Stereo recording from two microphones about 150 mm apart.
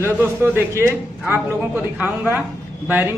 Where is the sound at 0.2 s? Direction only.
15° right (ahead or behind).